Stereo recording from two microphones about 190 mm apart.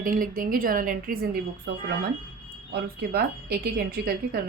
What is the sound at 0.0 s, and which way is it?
A woman's voice, 45° right (ahead or behind).